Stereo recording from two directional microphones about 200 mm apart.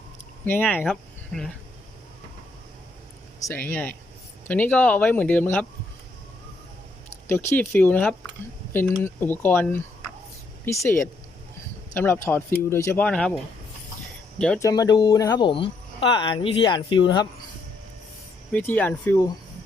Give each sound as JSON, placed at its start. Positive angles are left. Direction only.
{"t": 0.4, "sound": "speech", "side_deg": 10}
{"t": 3.4, "sound": "speech", "side_deg": 10}
{"t": 7.3, "sound": "speech", "side_deg": 10}
{"t": 14.3, "sound": "speech", "side_deg": 5}
{"t": 14.6, "sound": "speech", "side_deg": 20}
{"t": 18.5, "sound": "speech", "side_deg": 10}